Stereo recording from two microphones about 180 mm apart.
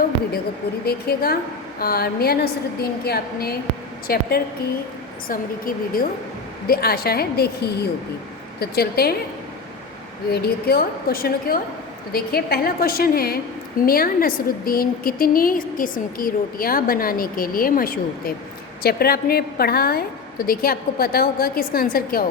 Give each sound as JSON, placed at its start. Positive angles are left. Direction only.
{"t": 0.9, "sound": "a woman's voice", "side_deg": 60}
{"t": 10.3, "sound": "a woman's voice", "side_deg": 55}